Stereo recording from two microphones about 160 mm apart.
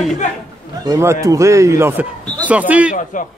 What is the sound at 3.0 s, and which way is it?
Speech, 50° left (ahead or behind).